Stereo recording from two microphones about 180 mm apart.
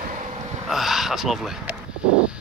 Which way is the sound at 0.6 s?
Centre (ahead or behind).